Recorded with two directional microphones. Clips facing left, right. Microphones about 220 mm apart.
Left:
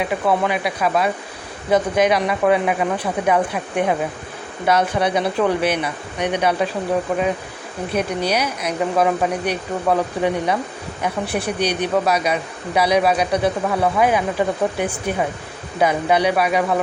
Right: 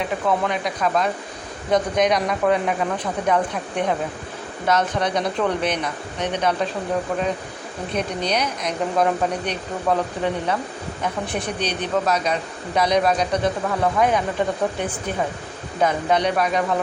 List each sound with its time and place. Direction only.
0.0 s speech: 10° left (ahead or behind)
7.9 s speech: 5° left (ahead or behind)